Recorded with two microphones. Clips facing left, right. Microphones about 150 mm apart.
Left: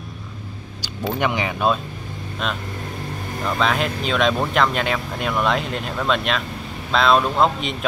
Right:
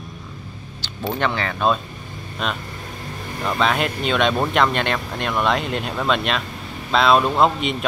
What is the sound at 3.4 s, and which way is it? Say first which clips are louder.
Speech: right 1 dB; centre (ahead or behind).